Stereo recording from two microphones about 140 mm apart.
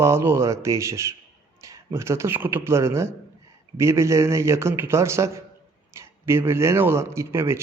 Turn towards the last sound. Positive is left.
turn(degrees=-20)  # may be behind; listen again after turning